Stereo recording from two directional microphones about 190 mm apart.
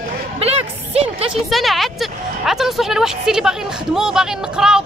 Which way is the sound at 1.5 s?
Centre (ahead or behind).